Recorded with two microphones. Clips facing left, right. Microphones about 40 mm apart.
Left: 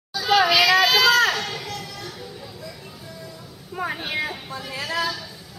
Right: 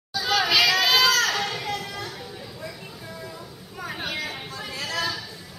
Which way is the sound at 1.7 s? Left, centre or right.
Right.